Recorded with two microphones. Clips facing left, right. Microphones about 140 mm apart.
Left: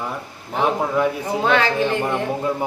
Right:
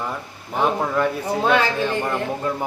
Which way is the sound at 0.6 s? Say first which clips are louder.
Left 1 dB; 10° left (ahead or behind).